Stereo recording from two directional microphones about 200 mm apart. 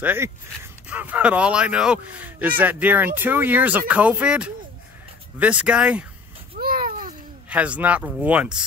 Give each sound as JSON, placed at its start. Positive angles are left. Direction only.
{"t": 0.0, "sound": "speech", "side_deg": -10}
{"t": 6.5, "sound": "babbling", "side_deg": -45}
{"t": 7.4, "sound": "speech", "side_deg": -5}